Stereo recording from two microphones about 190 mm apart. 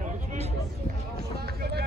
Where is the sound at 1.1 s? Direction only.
55° right (ahead or behind).